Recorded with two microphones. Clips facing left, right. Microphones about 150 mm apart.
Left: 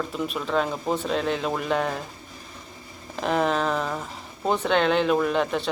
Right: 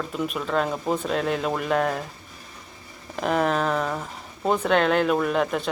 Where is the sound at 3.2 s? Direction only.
5° right (ahead or behind).